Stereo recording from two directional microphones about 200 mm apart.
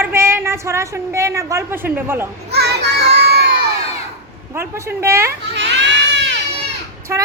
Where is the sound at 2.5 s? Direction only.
55° right (ahead or behind).